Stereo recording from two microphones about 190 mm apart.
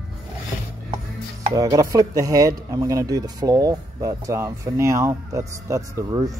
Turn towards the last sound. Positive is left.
turn(degrees=-20)  # may be behind; listen again after turning